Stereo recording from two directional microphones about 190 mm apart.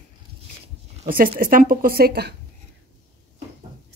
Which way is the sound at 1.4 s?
45° right (ahead or behind).